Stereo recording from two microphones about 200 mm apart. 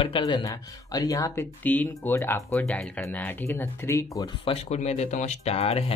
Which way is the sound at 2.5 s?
Centre (ahead or behind).